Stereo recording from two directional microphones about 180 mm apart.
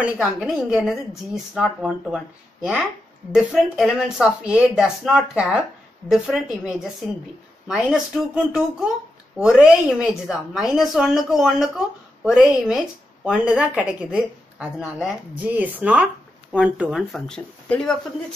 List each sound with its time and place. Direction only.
0.0 s a woman's voice: 5° right (ahead or behind)